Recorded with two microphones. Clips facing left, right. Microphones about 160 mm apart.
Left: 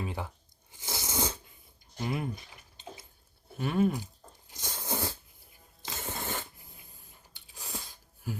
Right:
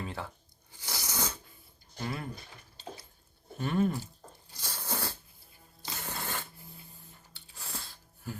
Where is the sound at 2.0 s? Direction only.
15° left (ahead or behind).